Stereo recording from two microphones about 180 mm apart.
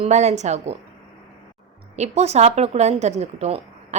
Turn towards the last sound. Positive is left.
turn(degrees=-40)  # may be behind; listen again after turning